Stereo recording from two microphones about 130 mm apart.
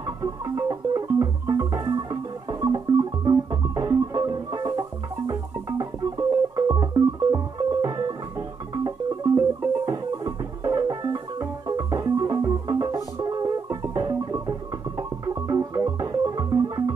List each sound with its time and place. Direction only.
0.0 s music: 30° right (ahead or behind)